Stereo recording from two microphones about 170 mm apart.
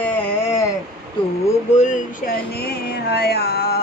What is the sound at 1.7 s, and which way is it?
Speech, 45° left (ahead or behind).